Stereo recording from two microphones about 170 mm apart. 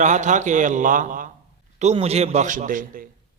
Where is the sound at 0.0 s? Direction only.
45° right (ahead or behind).